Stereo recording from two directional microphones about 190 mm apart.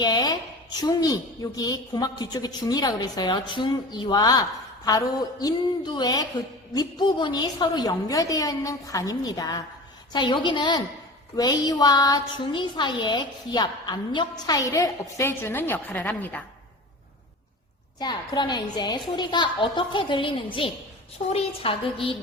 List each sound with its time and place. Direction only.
0.0 s a sound: 20° left (ahead or behind)
0.8 s a woman's voice: 20° left (ahead or behind)
18.0 s a woman's voice: 25° left (ahead or behind)